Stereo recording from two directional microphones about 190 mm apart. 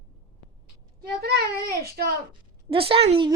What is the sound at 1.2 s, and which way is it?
Speech, 55° right (ahead or behind).